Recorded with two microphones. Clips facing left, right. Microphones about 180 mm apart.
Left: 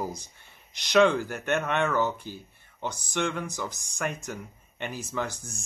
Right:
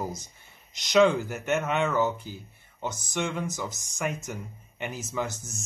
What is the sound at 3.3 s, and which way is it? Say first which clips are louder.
Speech: right 1 dB; 20° right (ahead or behind).